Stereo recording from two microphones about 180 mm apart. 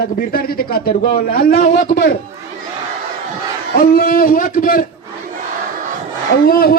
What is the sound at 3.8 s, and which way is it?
A man's voice, 55° left (ahead or behind).